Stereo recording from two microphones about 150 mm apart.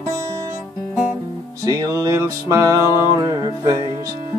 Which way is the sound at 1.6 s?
25° right (ahead or behind).